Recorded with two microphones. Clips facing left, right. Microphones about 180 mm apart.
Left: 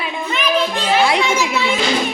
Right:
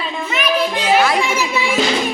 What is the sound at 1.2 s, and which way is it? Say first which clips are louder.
Speech: left 1 dB; 10° right (ahead or behind).